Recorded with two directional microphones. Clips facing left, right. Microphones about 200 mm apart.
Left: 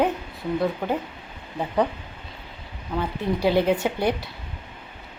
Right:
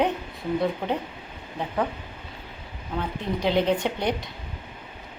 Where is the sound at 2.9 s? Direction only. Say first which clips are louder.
Left 3 dB; 10° left (ahead or behind).